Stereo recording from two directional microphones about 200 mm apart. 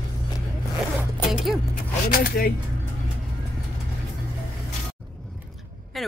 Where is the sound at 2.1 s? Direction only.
45° left (ahead or behind).